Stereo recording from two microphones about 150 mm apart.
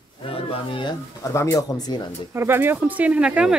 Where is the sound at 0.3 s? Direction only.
35° left (ahead or behind).